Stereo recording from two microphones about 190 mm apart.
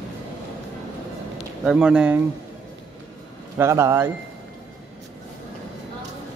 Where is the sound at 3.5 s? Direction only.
15° right (ahead or behind).